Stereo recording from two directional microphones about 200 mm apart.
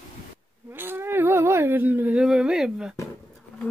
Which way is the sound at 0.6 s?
10° right (ahead or behind).